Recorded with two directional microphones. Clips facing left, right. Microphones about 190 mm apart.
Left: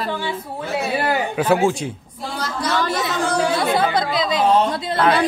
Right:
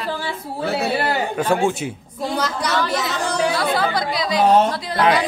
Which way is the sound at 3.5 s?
20° left (ahead or behind).